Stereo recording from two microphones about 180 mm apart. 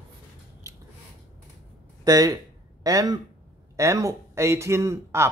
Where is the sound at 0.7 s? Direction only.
20° right (ahead or behind).